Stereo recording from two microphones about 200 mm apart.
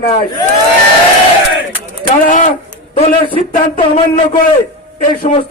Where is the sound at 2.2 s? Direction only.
40° left (ahead or behind).